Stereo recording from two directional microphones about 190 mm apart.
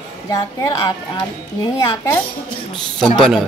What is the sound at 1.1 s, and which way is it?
A woman's voice, 20° left (ahead or behind).